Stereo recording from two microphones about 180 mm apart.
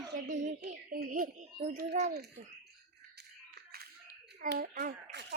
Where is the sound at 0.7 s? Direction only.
50° right (ahead or behind).